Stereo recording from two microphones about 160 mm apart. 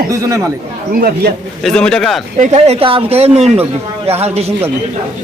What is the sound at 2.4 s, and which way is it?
Speech, 40° right (ahead or behind).